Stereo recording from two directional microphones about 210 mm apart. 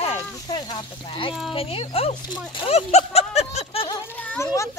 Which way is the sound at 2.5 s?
30° left (ahead or behind).